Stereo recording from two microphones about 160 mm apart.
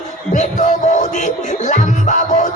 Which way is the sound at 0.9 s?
50° left (ahead or behind).